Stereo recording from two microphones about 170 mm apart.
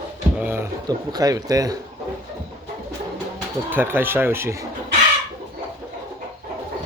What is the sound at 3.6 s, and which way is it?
Speech, 10° right (ahead or behind).